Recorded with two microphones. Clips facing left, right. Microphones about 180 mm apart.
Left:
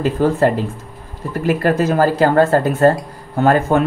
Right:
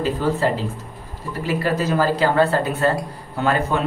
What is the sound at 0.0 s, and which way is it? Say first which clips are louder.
Speech: left 5 dB; 50° left (ahead or behind).